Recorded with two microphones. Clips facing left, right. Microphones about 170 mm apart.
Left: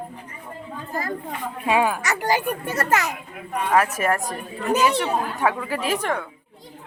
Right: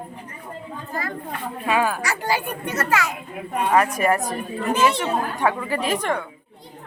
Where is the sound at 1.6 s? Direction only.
20° left (ahead or behind).